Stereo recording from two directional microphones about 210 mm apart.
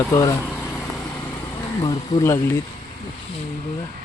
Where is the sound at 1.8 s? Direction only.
15° left (ahead or behind).